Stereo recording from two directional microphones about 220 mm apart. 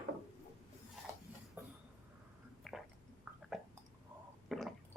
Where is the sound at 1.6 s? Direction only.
10° right (ahead or behind).